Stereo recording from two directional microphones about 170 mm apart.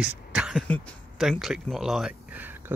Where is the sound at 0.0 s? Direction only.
5° right (ahead or behind).